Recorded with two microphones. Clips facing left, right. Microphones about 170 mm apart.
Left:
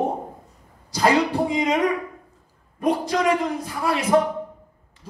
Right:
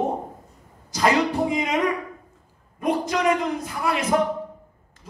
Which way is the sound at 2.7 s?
30° left (ahead or behind).